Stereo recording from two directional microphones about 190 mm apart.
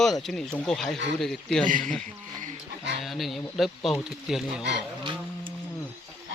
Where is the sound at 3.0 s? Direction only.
Centre (ahead or behind).